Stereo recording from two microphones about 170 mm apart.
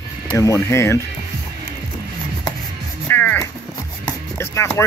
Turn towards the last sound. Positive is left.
turn(degrees=15)  # may be behind; listen again after turning